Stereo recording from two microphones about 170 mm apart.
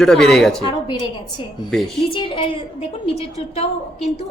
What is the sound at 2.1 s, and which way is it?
Speech, 30° left (ahead or behind).